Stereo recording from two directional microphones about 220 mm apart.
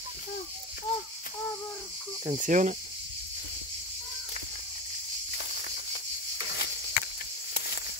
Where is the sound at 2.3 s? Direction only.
35° right (ahead or behind).